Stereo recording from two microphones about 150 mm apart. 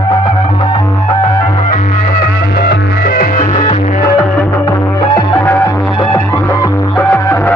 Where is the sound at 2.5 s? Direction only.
90° left; by 3.5 s 65° left (ahead or behind).